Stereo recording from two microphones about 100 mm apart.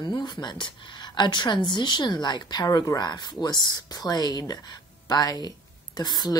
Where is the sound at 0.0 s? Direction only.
50° left (ahead or behind).